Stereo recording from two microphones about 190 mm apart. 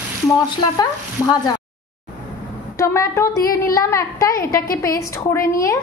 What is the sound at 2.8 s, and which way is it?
A woman's voice, 15° left (ahead or behind).